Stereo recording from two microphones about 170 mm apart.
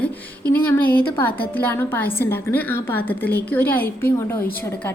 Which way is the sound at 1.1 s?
10° left (ahead or behind).